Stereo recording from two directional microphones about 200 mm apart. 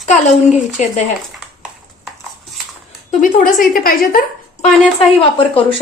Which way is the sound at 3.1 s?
40° left (ahead or behind).